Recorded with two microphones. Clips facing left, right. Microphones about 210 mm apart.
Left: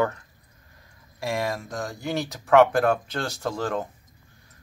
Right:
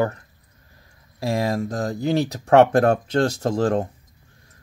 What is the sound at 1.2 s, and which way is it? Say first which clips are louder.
Speech: right 5 dB; 35° right (ahead or behind).